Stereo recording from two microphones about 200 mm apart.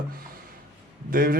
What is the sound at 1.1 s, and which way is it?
Speech, 45° right (ahead or behind).